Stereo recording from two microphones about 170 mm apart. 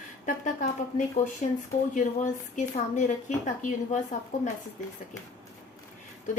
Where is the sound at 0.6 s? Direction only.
50° left (ahead or behind).